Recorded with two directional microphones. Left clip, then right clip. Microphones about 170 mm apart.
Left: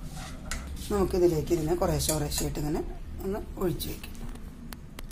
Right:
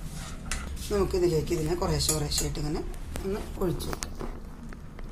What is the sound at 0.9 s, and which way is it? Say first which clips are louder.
Speech: left 1 dB; 55° left (ahead or behind).